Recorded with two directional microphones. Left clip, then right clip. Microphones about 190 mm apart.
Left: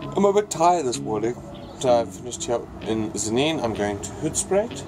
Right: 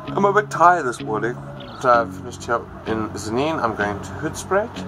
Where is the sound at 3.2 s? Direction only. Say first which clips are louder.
Right 1 dB; centre (ahead or behind).